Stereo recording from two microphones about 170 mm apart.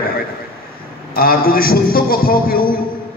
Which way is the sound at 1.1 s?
60° left (ahead or behind).